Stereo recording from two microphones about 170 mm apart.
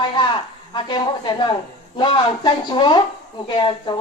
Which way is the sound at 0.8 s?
25° left (ahead or behind).